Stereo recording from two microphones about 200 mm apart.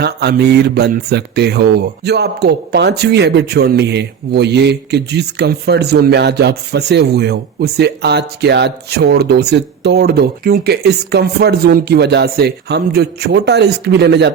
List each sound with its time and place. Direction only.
0.0 s speech: 55° right (ahead or behind)